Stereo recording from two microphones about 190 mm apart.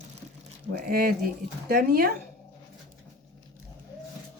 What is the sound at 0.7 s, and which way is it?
Speech, 55° right (ahead or behind).